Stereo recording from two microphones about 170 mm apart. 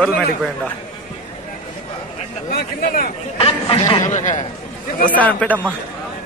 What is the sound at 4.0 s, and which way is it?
Speech, 45° left (ahead or behind).